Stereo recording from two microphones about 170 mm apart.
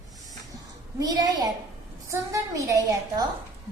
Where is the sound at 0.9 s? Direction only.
20° right (ahead or behind).